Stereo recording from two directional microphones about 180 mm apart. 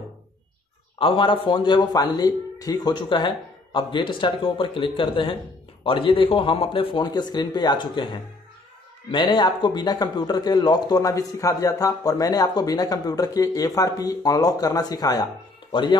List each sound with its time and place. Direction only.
0.9 s speech: 30° left (ahead or behind)